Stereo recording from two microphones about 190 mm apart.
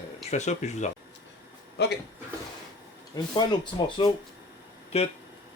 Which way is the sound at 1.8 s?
60° left (ahead or behind).